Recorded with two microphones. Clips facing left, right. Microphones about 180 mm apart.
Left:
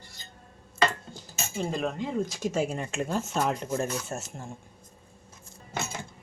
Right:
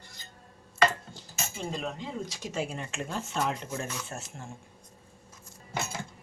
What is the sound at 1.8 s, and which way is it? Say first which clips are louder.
Speech: left 6 dB; 50° left (ahead or behind).